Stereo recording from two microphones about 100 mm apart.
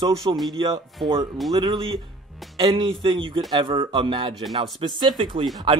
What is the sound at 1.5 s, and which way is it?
Speech, 45° right (ahead or behind).